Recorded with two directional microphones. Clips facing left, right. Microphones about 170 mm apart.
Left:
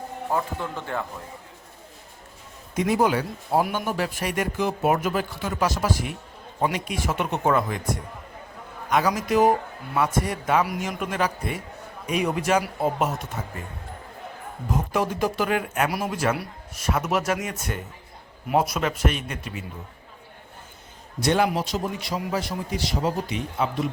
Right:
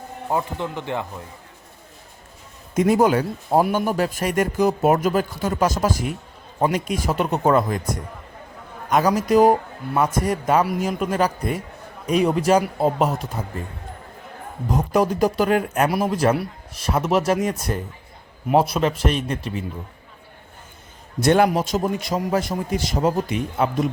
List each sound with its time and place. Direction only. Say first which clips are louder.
0.3 s speech: right 3 dB; 20° right (ahead or behind)
2.7 s a man's voice: right 5 dB; 50° right (ahead or behind)
8.9 s speech: right 4 dB; 40° right (ahead or behind)
14.9 s speech: right 6 dB; 40° right (ahead or behind)
15.9 s speech: right 6 dB; 30° right (ahead or behind)
21.2 s a man's voice: right 5 dB; 50° right (ahead or behind)